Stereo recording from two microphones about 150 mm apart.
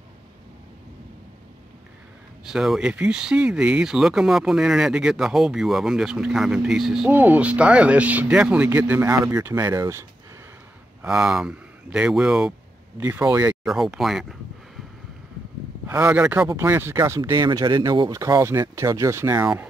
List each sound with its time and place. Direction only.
2.4 s speech: 5° right (ahead or behind)
11.0 s speech: 5° right (ahead or behind)
12.9 s speech: 15° right (ahead or behind)
15.9 s speech: 10° right (ahead or behind)